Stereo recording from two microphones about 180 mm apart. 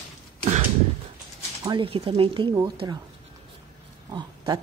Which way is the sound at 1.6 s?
30° right (ahead or behind).